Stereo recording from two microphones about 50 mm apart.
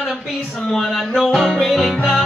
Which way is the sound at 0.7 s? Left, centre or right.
Centre.